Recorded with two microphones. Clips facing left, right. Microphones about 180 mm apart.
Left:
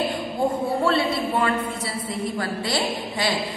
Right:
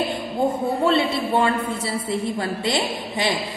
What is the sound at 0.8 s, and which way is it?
A woman's voice, 25° right (ahead or behind).